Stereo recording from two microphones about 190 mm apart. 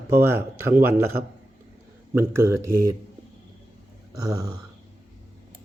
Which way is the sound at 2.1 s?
15° right (ahead or behind).